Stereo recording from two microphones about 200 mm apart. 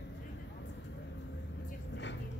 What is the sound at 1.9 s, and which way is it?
Music, 65° left (ahead or behind).